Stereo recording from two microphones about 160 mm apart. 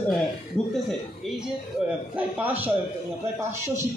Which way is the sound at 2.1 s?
10° right (ahead or behind).